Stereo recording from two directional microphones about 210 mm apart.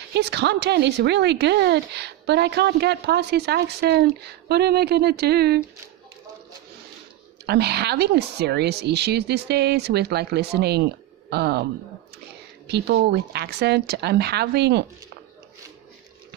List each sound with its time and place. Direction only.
0.1 s speech: 55° right (ahead or behind)
7.4 s speech: 50° right (ahead or behind)
12.6 s speech: 55° right (ahead or behind)